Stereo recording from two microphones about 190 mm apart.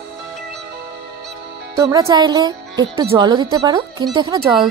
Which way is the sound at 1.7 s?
15° right (ahead or behind).